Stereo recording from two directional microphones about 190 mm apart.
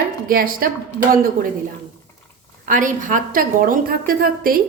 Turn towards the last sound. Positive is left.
turn(degrees=-50)  # may be behind; listen again after turning